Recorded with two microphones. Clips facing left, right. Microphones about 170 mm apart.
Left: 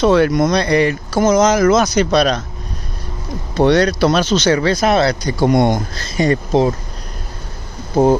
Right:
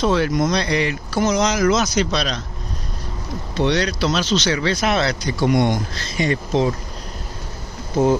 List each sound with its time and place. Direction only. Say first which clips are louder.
0.0 s speech: left 6 dB; 65° left (ahead or behind)
3.5 s speech: left 7 dB; 50° left (ahead or behind)
7.9 s speech: left 4 dB; 35° left (ahead or behind)